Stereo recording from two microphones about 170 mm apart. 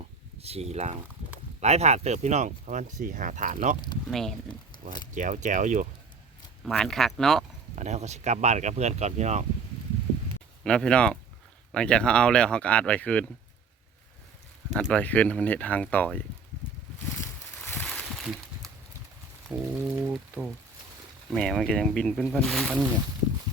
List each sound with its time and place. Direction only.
0.3 s speech: 35° right (ahead or behind)
4.1 s speech: centre (ahead or behind)
4.4 s a sound: 25° left (ahead or behind)
5.1 s speech: 45° right (ahead or behind)
6.7 s speech: 5° left (ahead or behind)
7.8 s speech: 40° right (ahead or behind)
10.6 s speech: 5° left (ahead or behind)
14.7 s speech: centre (ahead or behind)
17.2 s a sound: 10° left (ahead or behind)
19.8 s pour: 10° right (ahead or behind)
21.2 s speech: centre (ahead or behind)